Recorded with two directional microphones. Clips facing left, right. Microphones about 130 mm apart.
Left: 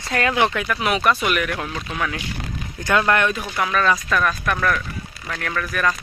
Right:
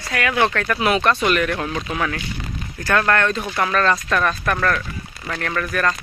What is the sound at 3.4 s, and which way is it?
Speech, centre (ahead or behind).